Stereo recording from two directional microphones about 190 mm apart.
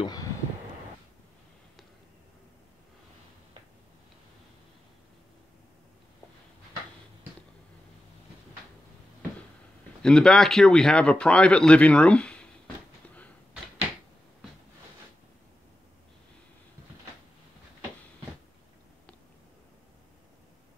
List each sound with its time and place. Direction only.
10.0 s speech: 5° left (ahead or behind)